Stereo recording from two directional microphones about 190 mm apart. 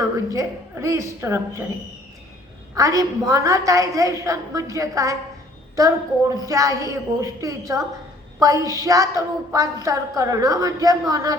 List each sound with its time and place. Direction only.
0.3 s a woman's voice: 15° right (ahead or behind)
2.7 s a woman's voice: 20° right (ahead or behind)